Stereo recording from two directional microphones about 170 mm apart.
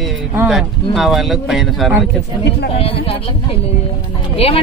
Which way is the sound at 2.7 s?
35° left (ahead or behind).